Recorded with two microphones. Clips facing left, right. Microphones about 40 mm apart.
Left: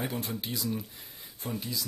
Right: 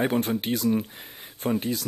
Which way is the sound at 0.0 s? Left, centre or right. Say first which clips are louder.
Right 10 dB; right.